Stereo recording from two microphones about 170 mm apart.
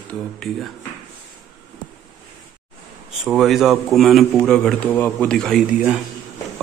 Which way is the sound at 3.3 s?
Centre (ahead or behind).